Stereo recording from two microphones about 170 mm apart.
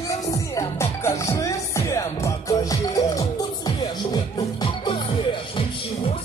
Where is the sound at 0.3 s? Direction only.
15° left (ahead or behind).